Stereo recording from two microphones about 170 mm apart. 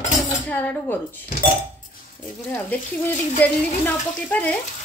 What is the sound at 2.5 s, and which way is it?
A woman's voice, 10° left (ahead or behind).